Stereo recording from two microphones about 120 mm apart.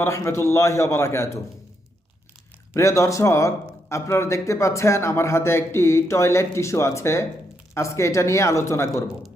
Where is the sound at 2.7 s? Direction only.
25° left (ahead or behind).